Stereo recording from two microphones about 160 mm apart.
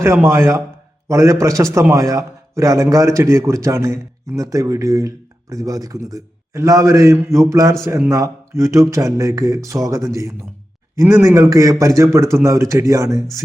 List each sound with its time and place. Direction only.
0.0 s a man's voice: 15° right (ahead or behind)